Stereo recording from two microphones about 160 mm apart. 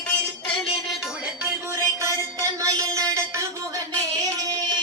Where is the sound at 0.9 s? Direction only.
5° right (ahead or behind).